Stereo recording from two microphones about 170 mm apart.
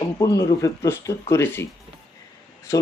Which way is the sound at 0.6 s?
15° left (ahead or behind).